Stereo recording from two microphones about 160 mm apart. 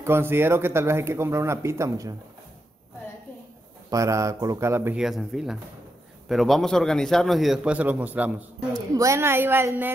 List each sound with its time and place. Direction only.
0.0 s speech: 15° right (ahead or behind)
3.9 s speech: 20° right (ahead or behind)
5.0 s a man's voice: centre (ahead or behind)